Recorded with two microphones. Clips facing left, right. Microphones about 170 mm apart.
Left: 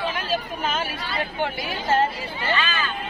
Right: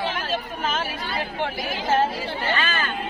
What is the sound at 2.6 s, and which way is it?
Speech, 50° right (ahead or behind).